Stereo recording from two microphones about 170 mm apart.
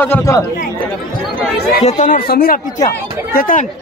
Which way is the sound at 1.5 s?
70° left (ahead or behind).